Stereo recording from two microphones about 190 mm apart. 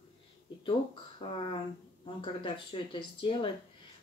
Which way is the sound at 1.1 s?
25° left (ahead or behind).